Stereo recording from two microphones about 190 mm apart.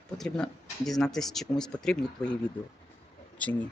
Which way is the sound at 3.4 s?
10° left (ahead or behind).